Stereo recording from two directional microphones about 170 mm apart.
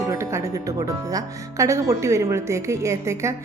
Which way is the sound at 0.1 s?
15° right (ahead or behind).